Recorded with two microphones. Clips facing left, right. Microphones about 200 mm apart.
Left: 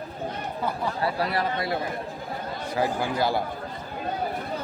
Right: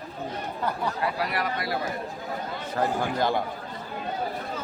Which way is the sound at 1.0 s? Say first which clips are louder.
Left 4 dB; 30° left (ahead or behind).